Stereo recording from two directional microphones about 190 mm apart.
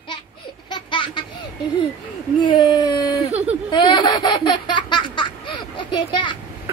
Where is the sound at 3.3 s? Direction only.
35° right (ahead or behind).